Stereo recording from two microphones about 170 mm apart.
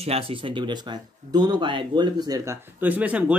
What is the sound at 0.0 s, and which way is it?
Speech, 35° right (ahead or behind).